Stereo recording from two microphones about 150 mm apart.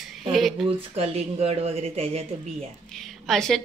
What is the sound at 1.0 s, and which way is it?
Speech, 45° right (ahead or behind).